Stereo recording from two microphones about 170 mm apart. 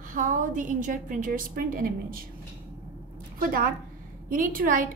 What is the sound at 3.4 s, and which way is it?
A woman's voice, 55° right (ahead or behind).